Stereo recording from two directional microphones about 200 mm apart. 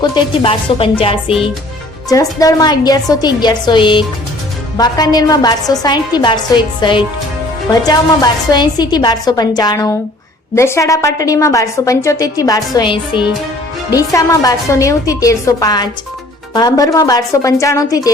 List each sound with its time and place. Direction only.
0.0 s a woman's voice: 25° left (ahead or behind)
2.0 s a woman's voice: 15° left (ahead or behind)
7.7 s a woman's voice: 20° left (ahead or behind)